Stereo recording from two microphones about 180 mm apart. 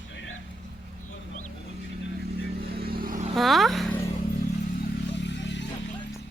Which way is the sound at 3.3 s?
Centre (ahead or behind).